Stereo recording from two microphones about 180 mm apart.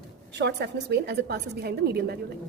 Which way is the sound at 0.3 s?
70° right (ahead or behind).